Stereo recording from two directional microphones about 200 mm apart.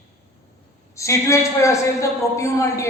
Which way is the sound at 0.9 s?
15° left (ahead or behind).